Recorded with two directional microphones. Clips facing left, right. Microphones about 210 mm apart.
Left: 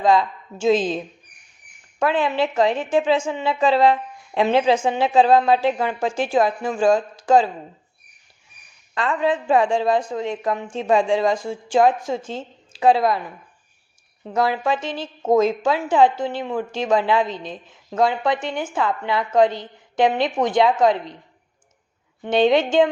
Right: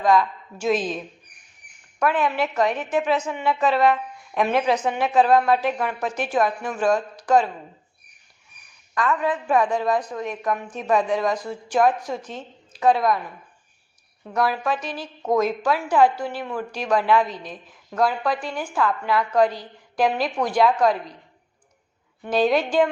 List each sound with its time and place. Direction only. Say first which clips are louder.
0.0 s a woman's voice: left 1 dB; 25° left (ahead or behind)
9.0 s a woman's voice: left 2 dB; 30° left (ahead or behind)
14.3 s a woman's voice: left 2 dB; 25° left (ahead or behind)
22.2 s a woman's voice: left 3 dB; 25° left (ahead or behind)